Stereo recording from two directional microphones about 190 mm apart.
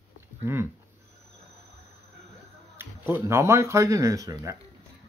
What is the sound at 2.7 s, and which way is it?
Speech, 10° right (ahead or behind).